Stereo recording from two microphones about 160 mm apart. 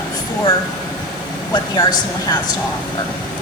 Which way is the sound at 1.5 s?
25° left (ahead or behind).